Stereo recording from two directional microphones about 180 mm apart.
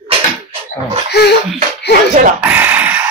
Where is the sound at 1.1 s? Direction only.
65° left (ahead or behind).